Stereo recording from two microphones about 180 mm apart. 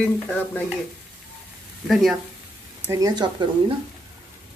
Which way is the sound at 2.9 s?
20° right (ahead or behind).